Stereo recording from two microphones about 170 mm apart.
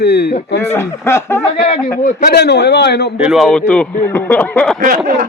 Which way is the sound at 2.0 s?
55° left (ahead or behind).